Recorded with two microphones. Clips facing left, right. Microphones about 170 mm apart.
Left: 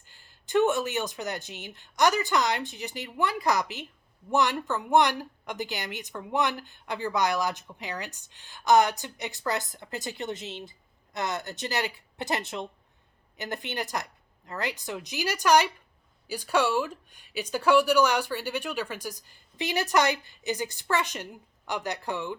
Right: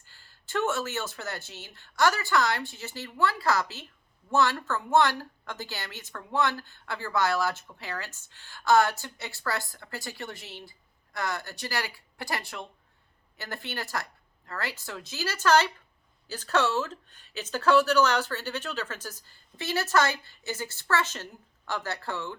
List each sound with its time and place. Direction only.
0.1 s speech: 20° left (ahead or behind)